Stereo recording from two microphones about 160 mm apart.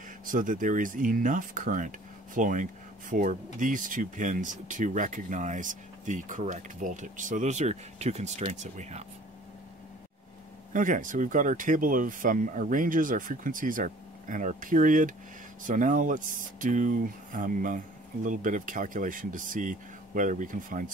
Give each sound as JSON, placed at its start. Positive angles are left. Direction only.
{"t": 0.2, "sound": "speech", "side_deg": -55}
{"t": 10.7, "sound": "speech", "side_deg": -55}